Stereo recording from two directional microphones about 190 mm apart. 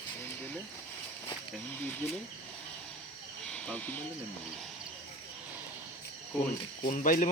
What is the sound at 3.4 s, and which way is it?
Cricket, 5° left (ahead or behind).